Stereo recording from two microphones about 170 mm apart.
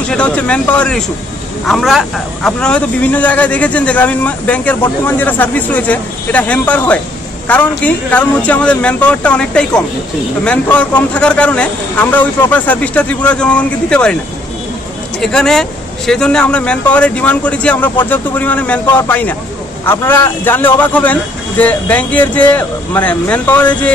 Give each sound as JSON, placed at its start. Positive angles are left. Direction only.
{"t": 0.1, "sound": "a man's voice", "side_deg": 5}
{"t": 15.1, "sound": "a man's voice", "side_deg": 5}